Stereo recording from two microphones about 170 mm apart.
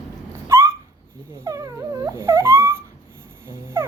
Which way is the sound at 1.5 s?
20° right (ahead or behind).